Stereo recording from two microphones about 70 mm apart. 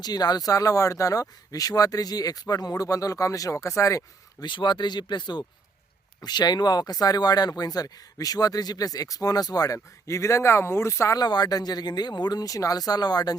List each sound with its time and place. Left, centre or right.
0.0 s speech: left
4.4 s speech: left
11.1 s speech: left